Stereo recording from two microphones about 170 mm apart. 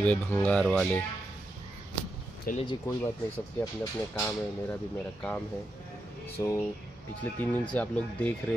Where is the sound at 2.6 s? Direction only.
30° left (ahead or behind).